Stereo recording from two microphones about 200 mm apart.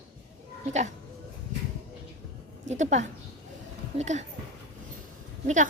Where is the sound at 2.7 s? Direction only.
35° right (ahead or behind).